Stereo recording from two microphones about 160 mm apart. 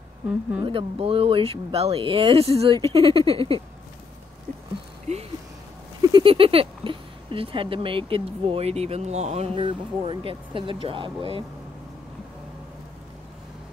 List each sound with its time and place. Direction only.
0.3 s speech: 5° right (ahead or behind)
0.7 s speech: 35° right (ahead or behind)
6.1 s speech: 35° right (ahead or behind)